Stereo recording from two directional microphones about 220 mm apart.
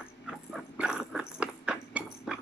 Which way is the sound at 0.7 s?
5° right (ahead or behind).